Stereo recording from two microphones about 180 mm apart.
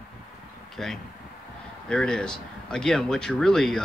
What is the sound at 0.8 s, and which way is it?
A man's voice, centre (ahead or behind).